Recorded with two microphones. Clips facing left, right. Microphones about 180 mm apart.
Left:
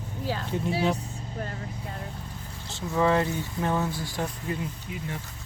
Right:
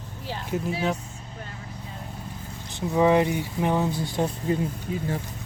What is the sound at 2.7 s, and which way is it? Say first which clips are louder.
Speech: right 4 dB; 15° right (ahead or behind).